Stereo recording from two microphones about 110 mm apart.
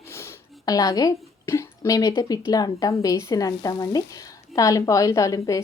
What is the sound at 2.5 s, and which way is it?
A woman's voice, 35° left (ahead or behind).